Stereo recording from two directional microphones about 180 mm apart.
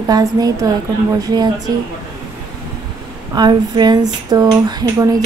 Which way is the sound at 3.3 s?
25° right (ahead or behind).